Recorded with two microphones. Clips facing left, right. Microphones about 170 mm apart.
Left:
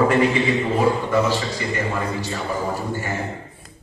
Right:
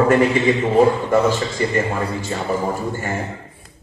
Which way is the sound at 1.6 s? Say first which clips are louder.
Right 6 dB; 45° right (ahead or behind).